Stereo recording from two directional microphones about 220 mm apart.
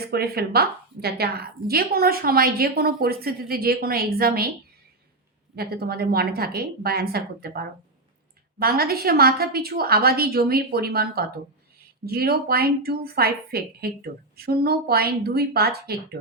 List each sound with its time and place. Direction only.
0.0 s a woman's voice: 45° right (ahead or behind)
5.5 s a woman's voice: 45° right (ahead or behind)